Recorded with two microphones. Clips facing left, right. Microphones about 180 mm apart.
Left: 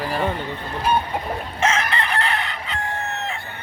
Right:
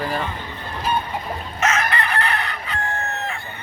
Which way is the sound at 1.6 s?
25° left (ahead or behind).